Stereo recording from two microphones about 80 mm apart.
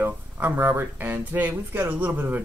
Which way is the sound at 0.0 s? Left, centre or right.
Right.